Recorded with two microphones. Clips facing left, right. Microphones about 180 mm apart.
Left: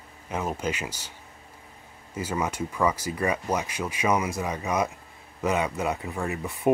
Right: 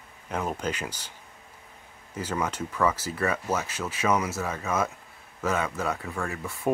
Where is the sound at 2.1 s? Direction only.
10° left (ahead or behind).